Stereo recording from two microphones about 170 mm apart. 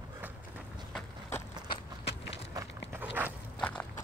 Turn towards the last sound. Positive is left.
turn(degrees=-10)  # may be behind; listen again after turning